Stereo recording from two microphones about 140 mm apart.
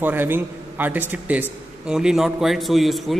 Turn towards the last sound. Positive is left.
turn(degrees=0)  # may be behind; listen again after turning